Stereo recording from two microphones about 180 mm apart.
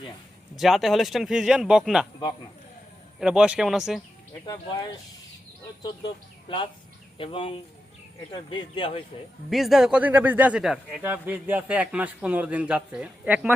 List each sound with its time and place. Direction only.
0.5 s speech: centre (ahead or behind)
3.2 s speech: 5° right (ahead or behind)
4.4 s speech: 20° left (ahead or behind)
7.2 s speech: 30° left (ahead or behind)
9.5 s a man's voice: centre (ahead or behind)